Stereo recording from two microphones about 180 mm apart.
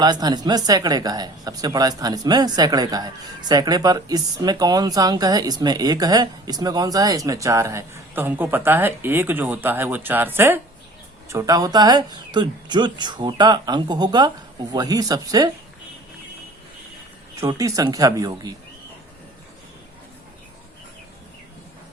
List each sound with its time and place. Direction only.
0.0 s speech: 20° right (ahead or behind)
17.4 s speech: 20° right (ahead or behind)